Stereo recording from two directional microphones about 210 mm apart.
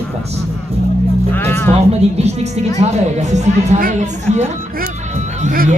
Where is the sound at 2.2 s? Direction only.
30° right (ahead or behind).